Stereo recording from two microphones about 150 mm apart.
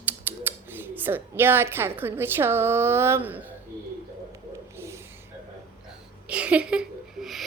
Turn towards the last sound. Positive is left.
turn(degrees=0)  # may be behind; listen again after turning